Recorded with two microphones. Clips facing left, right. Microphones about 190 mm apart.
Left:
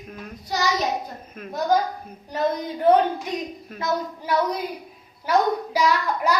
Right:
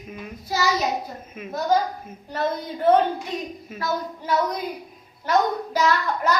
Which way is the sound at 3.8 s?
20° left (ahead or behind).